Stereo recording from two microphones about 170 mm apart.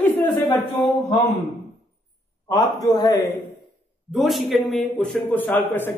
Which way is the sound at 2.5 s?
25° left (ahead or behind).